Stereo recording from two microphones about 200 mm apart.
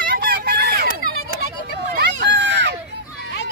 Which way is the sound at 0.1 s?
45° right (ahead or behind).